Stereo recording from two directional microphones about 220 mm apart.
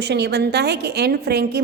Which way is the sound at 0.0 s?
50° right (ahead or behind).